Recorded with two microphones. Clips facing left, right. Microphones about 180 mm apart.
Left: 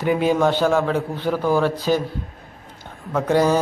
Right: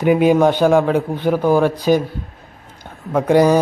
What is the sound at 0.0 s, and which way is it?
Speech, 15° right (ahead or behind).